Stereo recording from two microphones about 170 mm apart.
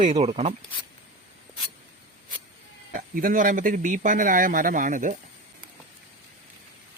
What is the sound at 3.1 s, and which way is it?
Speech, 55° right (ahead or behind).